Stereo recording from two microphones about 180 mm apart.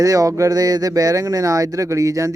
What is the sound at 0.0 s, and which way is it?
Speech, 20° right (ahead or behind).